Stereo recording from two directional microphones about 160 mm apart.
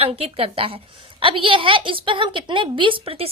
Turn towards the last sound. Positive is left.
turn(degrees=-35)  # may be behind; listen again after turning